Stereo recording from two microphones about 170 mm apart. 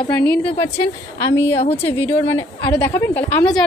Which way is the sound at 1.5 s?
35° left (ahead or behind).